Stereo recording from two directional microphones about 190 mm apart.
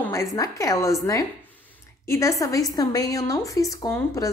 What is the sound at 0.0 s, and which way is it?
A woman's voice, 15° left (ahead or behind).